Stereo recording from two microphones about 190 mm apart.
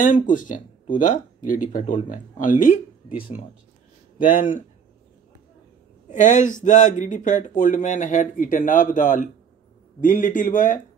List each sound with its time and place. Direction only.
0.0 s speech: 45° left (ahead or behind)
4.2 s speech: 45° left (ahead or behind)
6.0 s a man's voice: 40° left (ahead or behind)